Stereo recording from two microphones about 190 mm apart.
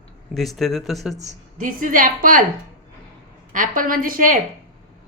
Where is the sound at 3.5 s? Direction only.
45° right (ahead or behind).